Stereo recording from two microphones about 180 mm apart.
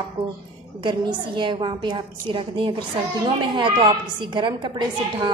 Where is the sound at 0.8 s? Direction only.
25° right (ahead or behind).